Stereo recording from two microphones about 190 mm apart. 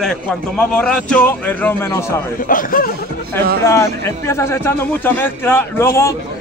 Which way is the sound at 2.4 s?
50° left (ahead or behind).